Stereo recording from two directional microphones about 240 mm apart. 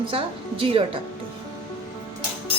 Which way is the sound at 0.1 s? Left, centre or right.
Right.